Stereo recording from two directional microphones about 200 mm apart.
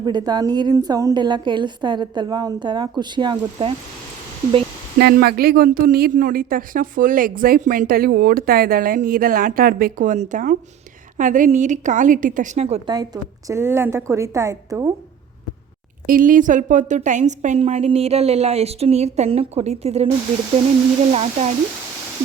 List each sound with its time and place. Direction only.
0.0 s a woman's voice: 20° right (ahead or behind)
4.9 s a woman's voice: 50° right (ahead or behind); by 12.9 s 30° right (ahead or behind)
13.2 s a woman's voice: 15° right (ahead or behind)
16.0 s a woman's voice: 45° right (ahead or behind)
21.1 s a woman's voice: 30° right (ahead or behind)